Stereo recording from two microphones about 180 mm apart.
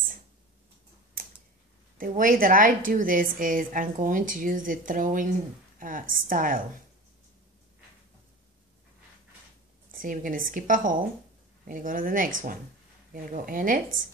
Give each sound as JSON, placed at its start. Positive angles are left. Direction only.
{"t": 2.0, "sound": "a woman's voice", "side_deg": -50}
{"t": 9.8, "sound": "a woman's voice", "side_deg": -50}